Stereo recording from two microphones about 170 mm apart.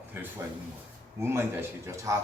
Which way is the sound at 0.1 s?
15° right (ahead or behind).